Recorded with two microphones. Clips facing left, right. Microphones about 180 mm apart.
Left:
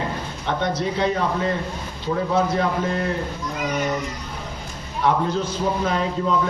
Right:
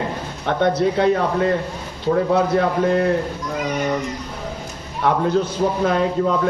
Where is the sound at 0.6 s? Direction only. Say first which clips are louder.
Right 7 dB; 55° right (ahead or behind).